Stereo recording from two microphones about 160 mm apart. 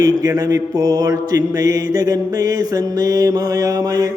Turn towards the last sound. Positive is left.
turn(degrees=-20)  # may be behind; listen again after turning